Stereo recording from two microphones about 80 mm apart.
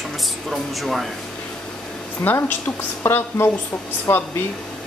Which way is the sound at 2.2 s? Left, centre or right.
Left.